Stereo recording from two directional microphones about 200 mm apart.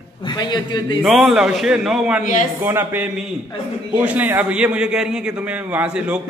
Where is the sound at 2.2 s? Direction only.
40° left (ahead or behind).